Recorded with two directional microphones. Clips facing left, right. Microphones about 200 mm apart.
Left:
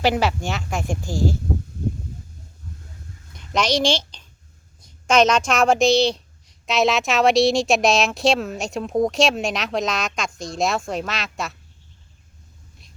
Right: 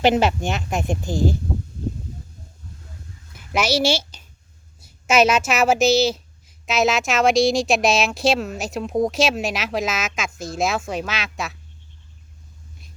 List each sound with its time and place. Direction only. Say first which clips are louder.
0.0 s a woman's voice: right 3 dB; 20° right (ahead or behind)
3.3 s a woman's voice: even; 5° right (ahead or behind)